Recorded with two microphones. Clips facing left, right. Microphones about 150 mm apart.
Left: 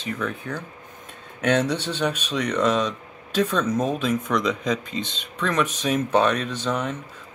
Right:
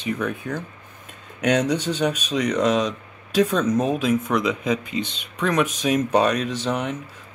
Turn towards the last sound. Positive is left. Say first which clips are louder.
# right 1 dB
turn(degrees=-10)  # may be behind; listen again after turning